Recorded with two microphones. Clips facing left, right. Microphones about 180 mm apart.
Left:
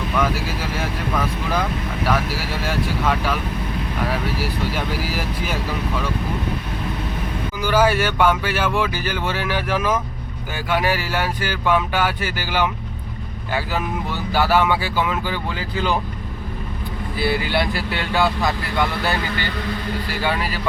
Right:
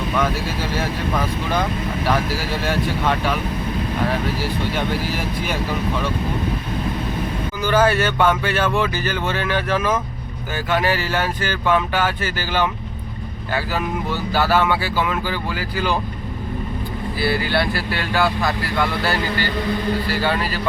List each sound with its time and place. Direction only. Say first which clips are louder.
0.2 s speech: left 1 dB; centre (ahead or behind)
2.6 s speech: right 1 dB; centre (ahead or behind)
4.7 s speech: right 2 dB; 5° left (ahead or behind)
7.6 s speech: right 1 dB; 10° left (ahead or behind)
17.2 s speech: even; 20° left (ahead or behind)